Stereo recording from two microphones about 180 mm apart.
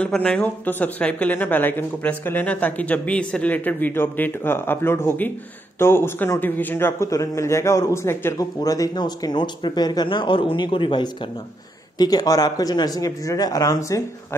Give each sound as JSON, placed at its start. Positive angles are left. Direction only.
{"t": 0.0, "sound": "speech", "side_deg": 5}